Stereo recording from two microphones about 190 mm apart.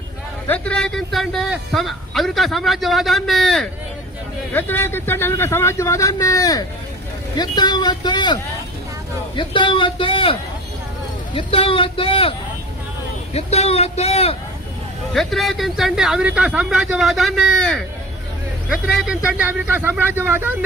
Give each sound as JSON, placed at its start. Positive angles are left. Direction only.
{"t": 0.4, "sound": "a man's voice", "side_deg": 5}
{"t": 11.3, "sound": "speech", "side_deg": 30}
{"t": 13.3, "sound": "speech", "side_deg": 35}
{"t": 15.1, "sound": "a man's voice", "side_deg": 0}